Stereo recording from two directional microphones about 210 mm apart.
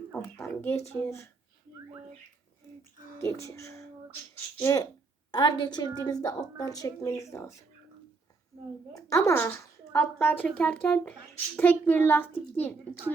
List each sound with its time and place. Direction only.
0.2 s speech: 15° left (ahead or behind)
3.2 s a woman's voice: 15° left (ahead or behind)
8.9 s a woman's voice: 15° left (ahead or behind)